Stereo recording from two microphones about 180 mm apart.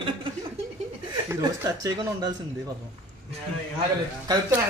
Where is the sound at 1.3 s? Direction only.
15° right (ahead or behind).